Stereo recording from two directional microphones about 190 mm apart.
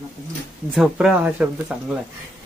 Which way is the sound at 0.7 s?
5° right (ahead or behind).